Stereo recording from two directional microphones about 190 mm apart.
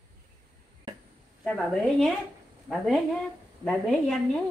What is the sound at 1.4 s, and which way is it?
A woman's voice, 5° left (ahead or behind).